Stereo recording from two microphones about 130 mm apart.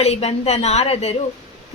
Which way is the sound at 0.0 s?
55° left (ahead or behind).